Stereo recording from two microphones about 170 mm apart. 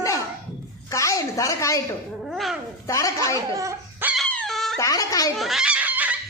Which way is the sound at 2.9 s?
20° left (ahead or behind).